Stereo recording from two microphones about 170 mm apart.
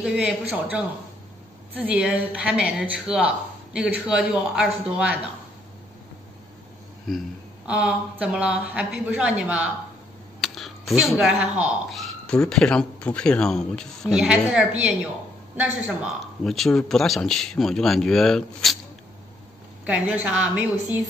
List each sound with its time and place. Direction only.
0.0 s a woman's voice: 5° right (ahead or behind)
7.1 s a woman's voice: centre (ahead or behind)
16.4 s speech: centre (ahead or behind)
19.9 s a woman's voice: 10° right (ahead or behind)